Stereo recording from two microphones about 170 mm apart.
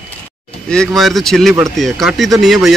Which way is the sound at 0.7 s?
5° left (ahead or behind).